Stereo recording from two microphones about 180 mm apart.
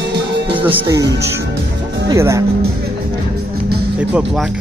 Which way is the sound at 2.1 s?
15° right (ahead or behind).